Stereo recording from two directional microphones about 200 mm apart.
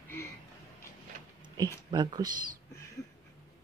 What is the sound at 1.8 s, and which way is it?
Speech, 20° right (ahead or behind).